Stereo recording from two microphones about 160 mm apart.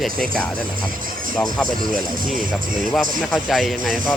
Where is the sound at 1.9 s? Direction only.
60° right (ahead or behind).